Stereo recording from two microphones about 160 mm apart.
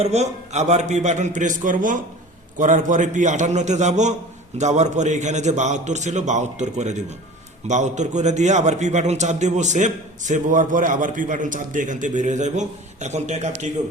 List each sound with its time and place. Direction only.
0.0 s a man's voice: 40° right (ahead or behind)